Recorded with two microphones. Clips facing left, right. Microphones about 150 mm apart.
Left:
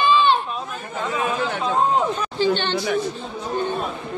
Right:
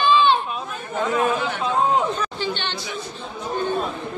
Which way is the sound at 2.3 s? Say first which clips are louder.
Left 7 dB; 40° left (ahead or behind).